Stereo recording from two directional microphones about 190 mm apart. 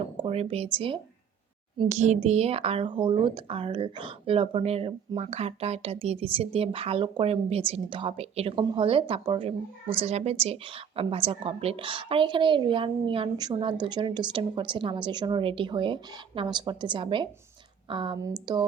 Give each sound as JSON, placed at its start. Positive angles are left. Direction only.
{"t": 0.2, "sound": "a woman's voice", "side_deg": -30}